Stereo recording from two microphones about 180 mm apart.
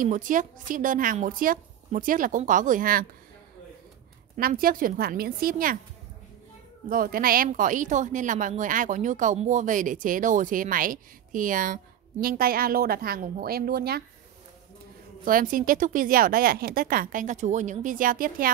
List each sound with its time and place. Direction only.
0.0 s speech: 45° right (ahead or behind)
4.4 s speech: 55° right (ahead or behind)
6.9 s speech: 55° right (ahead or behind)
15.2 s speech: 50° right (ahead or behind)